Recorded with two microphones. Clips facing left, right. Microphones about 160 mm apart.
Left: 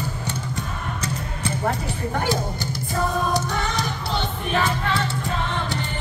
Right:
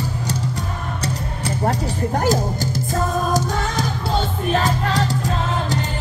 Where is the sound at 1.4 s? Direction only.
35° right (ahead or behind).